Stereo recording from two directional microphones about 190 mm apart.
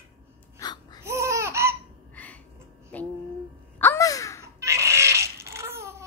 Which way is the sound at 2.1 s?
10° left (ahead or behind).